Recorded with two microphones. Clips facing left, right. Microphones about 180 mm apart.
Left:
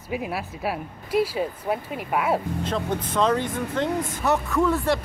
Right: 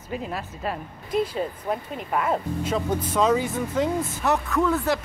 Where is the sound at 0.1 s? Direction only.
10° left (ahead or behind).